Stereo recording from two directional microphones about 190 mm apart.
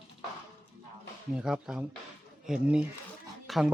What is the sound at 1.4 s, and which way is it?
Speech, 5° right (ahead or behind).